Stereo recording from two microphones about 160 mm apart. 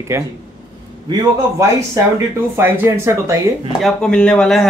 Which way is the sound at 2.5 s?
15° right (ahead or behind).